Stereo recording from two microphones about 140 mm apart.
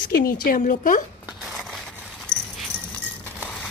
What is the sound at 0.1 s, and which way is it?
Speech, 85° left.